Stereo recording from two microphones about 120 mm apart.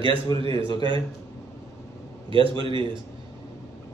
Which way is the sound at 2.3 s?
45° right (ahead or behind).